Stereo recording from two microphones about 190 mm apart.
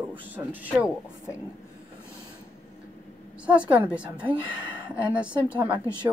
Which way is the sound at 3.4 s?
5° right (ahead or behind).